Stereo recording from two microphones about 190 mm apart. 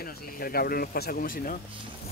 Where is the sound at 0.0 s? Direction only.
50° left (ahead or behind).